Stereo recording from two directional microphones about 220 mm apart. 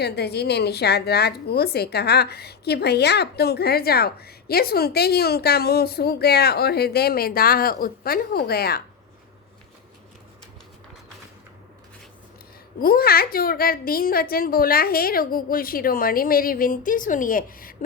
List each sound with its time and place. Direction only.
0.0 s a woman's voice: 50° left (ahead or behind)
12.8 s a woman's voice: 45° left (ahead or behind)